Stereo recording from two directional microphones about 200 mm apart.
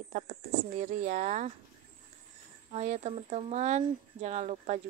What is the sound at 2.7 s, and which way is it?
Speech, 35° right (ahead or behind).